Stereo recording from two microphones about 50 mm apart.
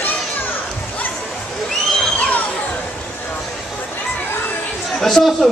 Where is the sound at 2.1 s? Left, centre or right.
Left.